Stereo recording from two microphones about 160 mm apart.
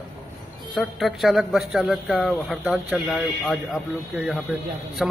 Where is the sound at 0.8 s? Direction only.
Centre (ahead or behind).